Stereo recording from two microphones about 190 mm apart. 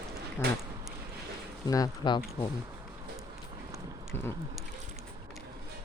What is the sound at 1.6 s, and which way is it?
Speech, 20° left (ahead or behind).